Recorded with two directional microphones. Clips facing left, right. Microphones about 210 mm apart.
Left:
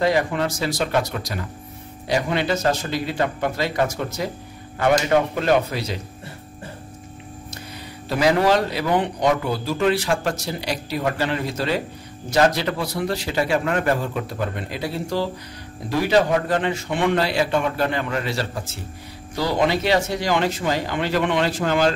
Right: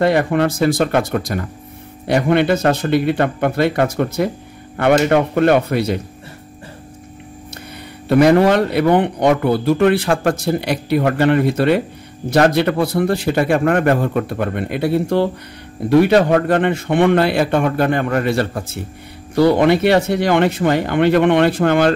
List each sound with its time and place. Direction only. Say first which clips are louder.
0.0 s a man's voice: right 5 dB; 60° right (ahead or behind)
8.1 s a man's voice: right 7 dB; 60° right (ahead or behind)